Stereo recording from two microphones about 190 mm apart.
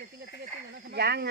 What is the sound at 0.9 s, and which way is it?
Speech, 60° right (ahead or behind).